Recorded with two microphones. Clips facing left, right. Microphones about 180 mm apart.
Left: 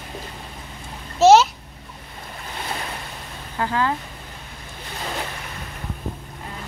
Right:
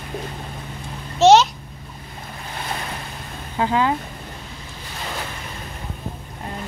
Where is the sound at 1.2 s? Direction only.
5° left (ahead or behind).